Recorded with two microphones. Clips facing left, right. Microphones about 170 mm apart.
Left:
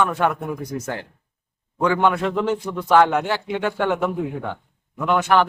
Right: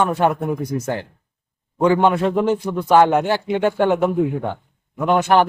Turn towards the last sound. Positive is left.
turn(degrees=-35)  # may be behind; listen again after turning